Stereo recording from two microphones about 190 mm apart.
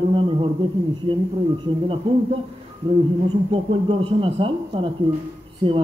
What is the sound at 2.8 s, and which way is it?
A man's voice, 30° right (ahead or behind).